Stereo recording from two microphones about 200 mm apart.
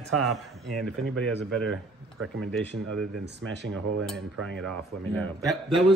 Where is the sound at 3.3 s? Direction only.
60° right (ahead or behind).